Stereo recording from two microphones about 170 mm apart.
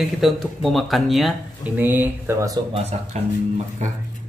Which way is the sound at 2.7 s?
40° right (ahead or behind).